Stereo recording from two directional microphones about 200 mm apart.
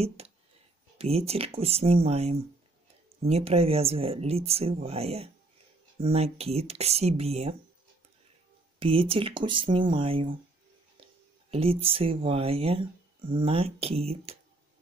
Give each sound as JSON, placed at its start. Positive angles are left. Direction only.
{"t": 0.2, "sound": "a sound", "side_deg": -30}
{"t": 0.9, "sound": "speech", "side_deg": -30}
{"t": 8.7, "sound": "speech", "side_deg": -25}
{"t": 11.5, "sound": "speech", "side_deg": -30}